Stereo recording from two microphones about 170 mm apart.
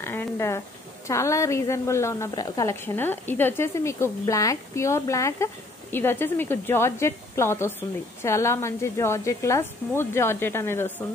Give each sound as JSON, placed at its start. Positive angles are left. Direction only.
{"t": 0.0, "sound": "a woman's voice", "side_deg": 15}